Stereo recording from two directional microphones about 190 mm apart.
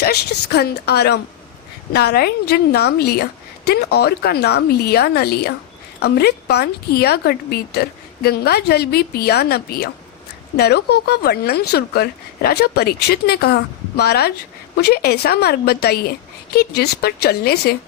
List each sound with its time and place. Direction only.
0.0 s speech: 60° left (ahead or behind)